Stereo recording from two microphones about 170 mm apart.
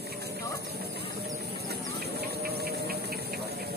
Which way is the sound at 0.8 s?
70° right (ahead or behind).